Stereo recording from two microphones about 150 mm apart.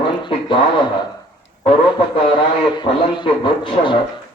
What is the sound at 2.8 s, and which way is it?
A man's voice, 30° left (ahead or behind).